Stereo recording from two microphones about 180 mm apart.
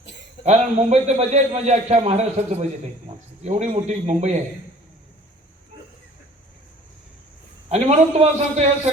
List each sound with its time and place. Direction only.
0.4 s a man's voice: 40° right (ahead or behind)
7.7 s a man's voice: 40° right (ahead or behind)